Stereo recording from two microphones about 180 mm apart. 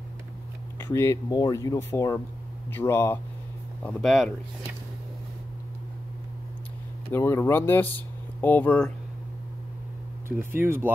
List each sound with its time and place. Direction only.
0.7 s speech: 15° left (ahead or behind)
3.8 s speech: centre (ahead or behind)
7.1 s speech: 15° left (ahead or behind)
10.2 s speech: 15° right (ahead or behind)